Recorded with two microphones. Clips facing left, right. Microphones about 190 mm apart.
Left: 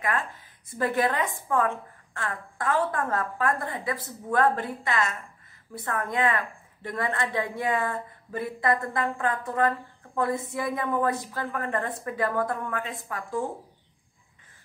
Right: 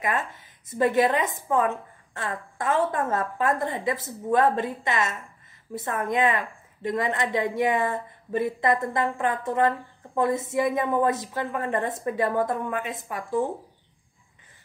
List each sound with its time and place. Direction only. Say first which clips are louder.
0.7 s a woman's voice: right 4 dB; 20° right (ahead or behind)